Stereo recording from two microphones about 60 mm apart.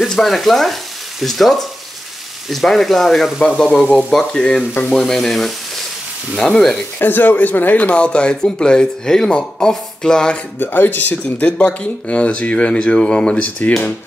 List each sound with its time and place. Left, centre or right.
0.0 s speech: centre
7.0 s speech: left; by 10.4 s centre
10.6 s speech: left